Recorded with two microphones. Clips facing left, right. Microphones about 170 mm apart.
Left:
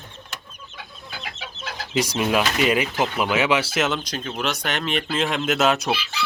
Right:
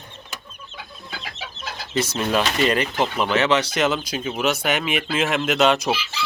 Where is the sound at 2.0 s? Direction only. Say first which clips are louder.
Even; 10° left (ahead or behind).